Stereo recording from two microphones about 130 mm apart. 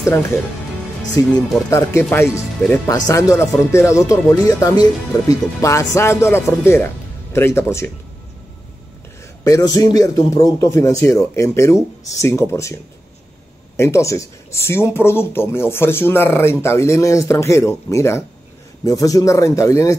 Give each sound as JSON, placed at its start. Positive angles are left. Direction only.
{"t": 0.0, "sound": "speech", "side_deg": 20}
{"t": 9.4, "sound": "speech", "side_deg": 30}